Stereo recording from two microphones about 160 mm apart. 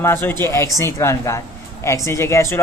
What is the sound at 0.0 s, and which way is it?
Speech, 15° left (ahead or behind).